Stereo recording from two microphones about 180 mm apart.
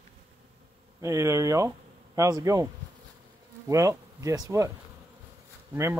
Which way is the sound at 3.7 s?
15° right (ahead or behind).